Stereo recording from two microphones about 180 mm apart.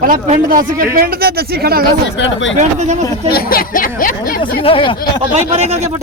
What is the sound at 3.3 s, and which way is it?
Speech, 55° left (ahead or behind).